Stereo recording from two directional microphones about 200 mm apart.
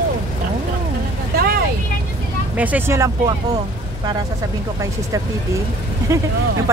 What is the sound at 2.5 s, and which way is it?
Speech, 10° right (ahead or behind).